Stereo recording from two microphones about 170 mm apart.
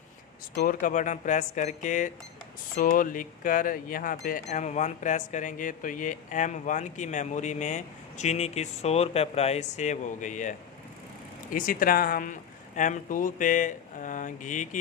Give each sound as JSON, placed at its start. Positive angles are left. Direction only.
{"t": 0.5, "sound": "speech", "side_deg": 60}
{"t": 4.4, "sound": "speech", "side_deg": 45}
{"t": 11.5, "sound": "speech", "side_deg": 55}